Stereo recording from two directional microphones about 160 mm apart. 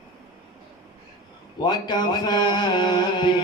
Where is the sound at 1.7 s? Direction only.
25° left (ahead or behind).